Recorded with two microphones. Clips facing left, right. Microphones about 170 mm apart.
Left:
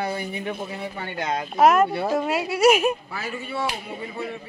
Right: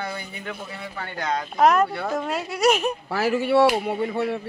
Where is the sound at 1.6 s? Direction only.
5° left (ahead or behind).